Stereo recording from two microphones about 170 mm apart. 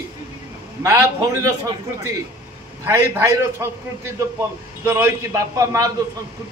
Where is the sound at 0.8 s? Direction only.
20° right (ahead or behind).